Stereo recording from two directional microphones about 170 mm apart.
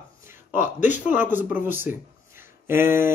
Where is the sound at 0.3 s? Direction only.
10° right (ahead or behind).